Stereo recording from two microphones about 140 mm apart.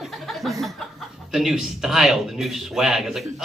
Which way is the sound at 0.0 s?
Centre (ahead or behind).